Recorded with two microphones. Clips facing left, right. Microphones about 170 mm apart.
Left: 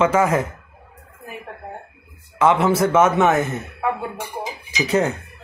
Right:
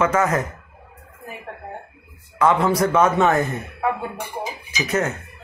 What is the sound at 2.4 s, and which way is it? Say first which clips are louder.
Speech: left 1 dB; 25° left (ahead or behind).